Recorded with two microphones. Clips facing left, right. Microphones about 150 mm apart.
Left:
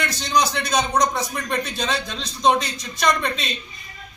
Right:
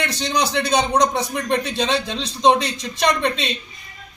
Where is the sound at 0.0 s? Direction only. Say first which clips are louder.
Even; 30° right (ahead or behind).